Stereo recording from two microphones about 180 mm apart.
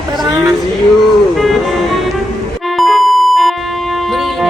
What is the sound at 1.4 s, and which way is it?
Music, centre (ahead or behind).